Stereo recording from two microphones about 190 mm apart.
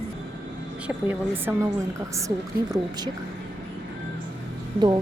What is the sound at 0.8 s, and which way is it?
Speech, 10° right (ahead or behind).